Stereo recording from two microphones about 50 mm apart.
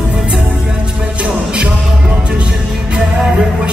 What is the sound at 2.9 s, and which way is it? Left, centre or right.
Music, centre.